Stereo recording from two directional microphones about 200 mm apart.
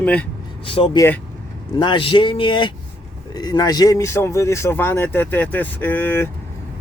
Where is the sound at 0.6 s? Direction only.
25° left (ahead or behind).